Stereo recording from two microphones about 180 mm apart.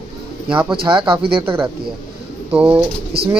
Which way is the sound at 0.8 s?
30° right (ahead or behind).